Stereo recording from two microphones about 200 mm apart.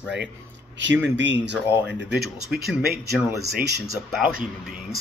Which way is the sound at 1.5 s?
10° right (ahead or behind).